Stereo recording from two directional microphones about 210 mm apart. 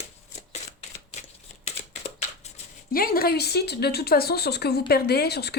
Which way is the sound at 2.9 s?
45° left (ahead or behind).